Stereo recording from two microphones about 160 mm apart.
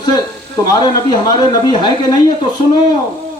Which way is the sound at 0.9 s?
25° left (ahead or behind).